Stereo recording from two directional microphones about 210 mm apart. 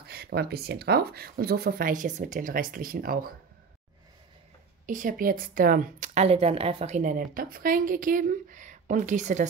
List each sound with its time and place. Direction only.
0.0 s speech: 50° right (ahead or behind)
4.8 s a woman's voice: 40° right (ahead or behind)